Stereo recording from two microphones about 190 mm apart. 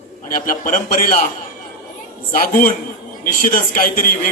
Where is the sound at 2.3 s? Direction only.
50° left (ahead or behind).